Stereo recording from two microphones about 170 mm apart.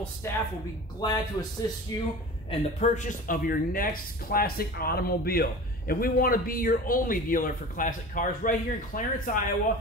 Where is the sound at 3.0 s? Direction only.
50° left (ahead or behind).